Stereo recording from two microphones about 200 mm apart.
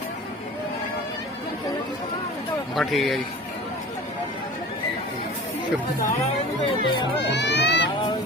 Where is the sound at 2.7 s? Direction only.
Centre (ahead or behind).